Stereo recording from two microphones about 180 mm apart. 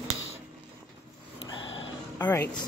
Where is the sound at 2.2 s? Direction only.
10° left (ahead or behind).